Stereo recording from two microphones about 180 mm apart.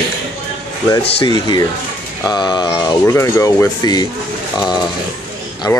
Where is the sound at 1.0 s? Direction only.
30° left (ahead or behind).